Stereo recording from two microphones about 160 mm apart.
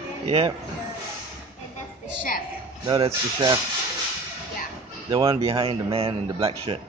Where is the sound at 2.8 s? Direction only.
25° right (ahead or behind).